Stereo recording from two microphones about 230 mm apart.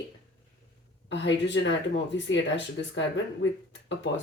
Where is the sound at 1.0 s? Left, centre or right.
Left.